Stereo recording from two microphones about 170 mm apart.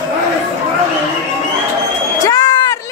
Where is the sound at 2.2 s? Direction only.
20° left (ahead or behind).